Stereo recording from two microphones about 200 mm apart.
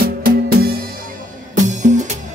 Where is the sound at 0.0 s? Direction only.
50° right (ahead or behind).